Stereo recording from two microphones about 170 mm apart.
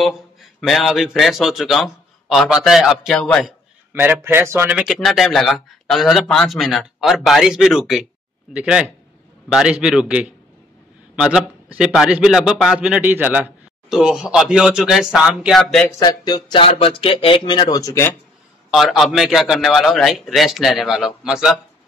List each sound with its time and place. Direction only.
0.0 s a man's voice: centre (ahead or behind)
3.9 s a man's voice: 10° right (ahead or behind)
16.0 s speech: 25° left (ahead or behind)
18.7 s a man's voice: centre (ahead or behind)